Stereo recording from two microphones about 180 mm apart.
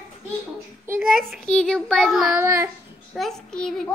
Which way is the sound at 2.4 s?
15° right (ahead or behind).